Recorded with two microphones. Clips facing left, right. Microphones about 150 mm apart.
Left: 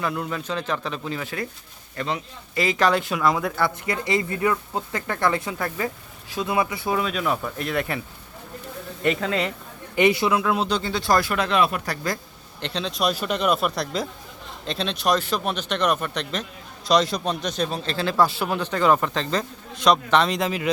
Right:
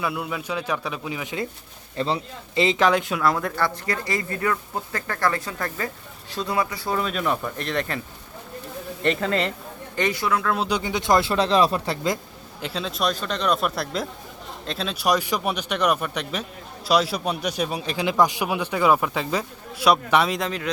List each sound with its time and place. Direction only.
0.0 s a man's voice: 5° right (ahead or behind)
2.0 s speech: 30° right (ahead or behind)
3.0 s speech: centre (ahead or behind)
7.0 s speech: centre (ahead or behind)
9.0 s speech: centre (ahead or behind)
9.9 s speech: 10° left (ahead or behind)
10.6 s speech: 15° right (ahead or behind)
12.6 s a man's voice: 5° right (ahead or behind)